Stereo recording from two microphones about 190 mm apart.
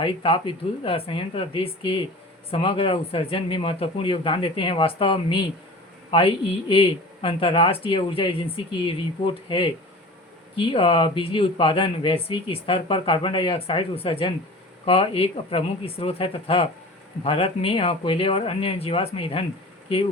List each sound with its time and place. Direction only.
0.0 s speech: 25° left (ahead or behind)